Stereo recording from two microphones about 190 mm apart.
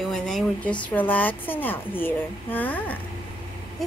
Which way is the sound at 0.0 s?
Centre (ahead or behind).